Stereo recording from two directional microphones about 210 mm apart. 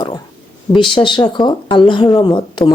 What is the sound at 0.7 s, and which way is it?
Speech, 25° left (ahead or behind).